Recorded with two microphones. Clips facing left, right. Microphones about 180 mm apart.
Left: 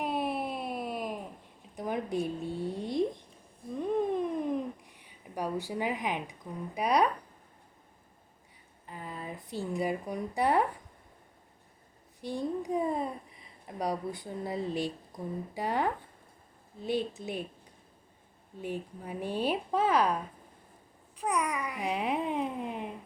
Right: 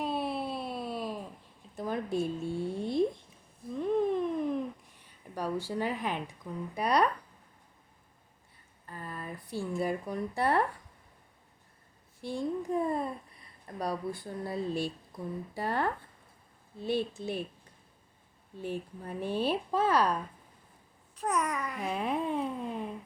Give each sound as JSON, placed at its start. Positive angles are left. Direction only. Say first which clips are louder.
{"t": 0.0, "sound": "a sound", "louder": "left 1 dB", "side_deg": 15}
{"t": 1.7, "sound": "speech", "louder": "even", "side_deg": 15}
{"t": 2.6, "sound": "music", "louder": "right 2 dB", "side_deg": 15}
{"t": 3.8, "sound": "a sound", "louder": "right 1 dB", "side_deg": 15}
{"t": 5.3, "sound": "speech", "louder": "even", "side_deg": 15}
{"t": 8.9, "sound": "speech", "louder": "left 1 dB", "side_deg": 15}
{"t": 12.2, "sound": "speech", "louder": "even", "side_deg": 15}
{"t": 18.6, "sound": "speech", "louder": "even", "side_deg": 15}
{"t": 21.2, "sound": "speech", "louder": "even", "side_deg": 10}